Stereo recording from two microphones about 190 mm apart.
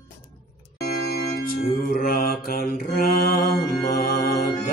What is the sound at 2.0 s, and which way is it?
Mantra, 50° left (ahead or behind).